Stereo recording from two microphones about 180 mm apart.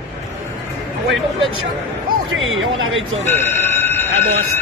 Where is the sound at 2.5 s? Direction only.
90° right.